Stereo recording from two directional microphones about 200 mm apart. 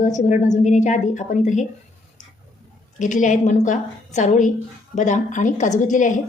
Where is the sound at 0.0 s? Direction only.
40° left (ahead or behind).